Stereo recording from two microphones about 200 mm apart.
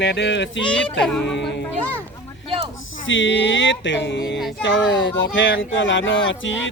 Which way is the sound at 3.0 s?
70° left (ahead or behind).